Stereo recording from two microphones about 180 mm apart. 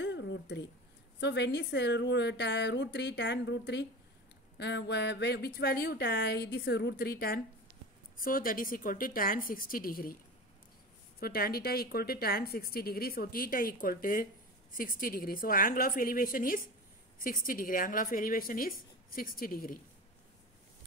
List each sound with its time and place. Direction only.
0.0 s a sound: 80° left
1.2 s a woman's voice: 75° left (ahead or behind); by 10.1 s 55° left (ahead or behind)
11.1 s a woman's voice: 55° left (ahead or behind)